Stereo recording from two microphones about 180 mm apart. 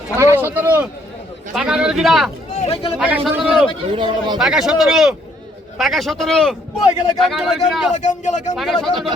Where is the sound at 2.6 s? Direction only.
30° left (ahead or behind).